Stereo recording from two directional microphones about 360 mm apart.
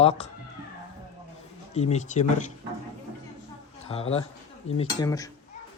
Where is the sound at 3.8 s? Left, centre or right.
Centre.